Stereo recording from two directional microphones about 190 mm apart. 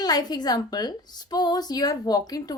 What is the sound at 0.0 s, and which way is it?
A woman's voice, 20° left (ahead or behind).